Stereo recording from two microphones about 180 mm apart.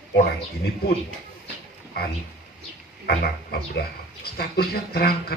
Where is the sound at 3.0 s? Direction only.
60° left (ahead or behind).